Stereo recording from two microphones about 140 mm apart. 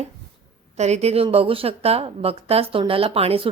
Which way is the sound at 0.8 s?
50° right (ahead or behind).